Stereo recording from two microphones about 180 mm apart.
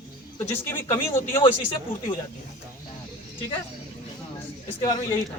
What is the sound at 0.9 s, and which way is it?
Speech, 15° left (ahead or behind).